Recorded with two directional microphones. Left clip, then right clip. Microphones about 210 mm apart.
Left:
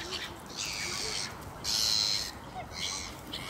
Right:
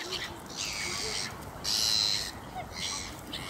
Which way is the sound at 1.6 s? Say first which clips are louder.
Right 1 dB; 10° right (ahead or behind).